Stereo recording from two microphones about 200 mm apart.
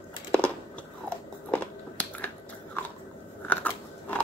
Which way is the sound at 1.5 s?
10° left (ahead or behind).